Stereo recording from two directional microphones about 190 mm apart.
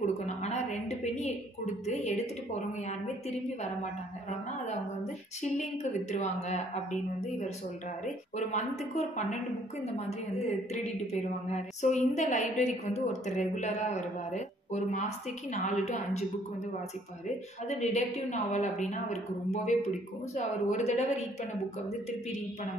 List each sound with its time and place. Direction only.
0.0 s a sound: 35° left (ahead or behind)
1.9 s a woman's voice: 35° left (ahead or behind)
5.4 s a woman's voice: 35° left (ahead or behind)
8.4 s a woman's voice: 35° left (ahead or behind)
17.6 s a woman's voice: 35° left (ahead or behind)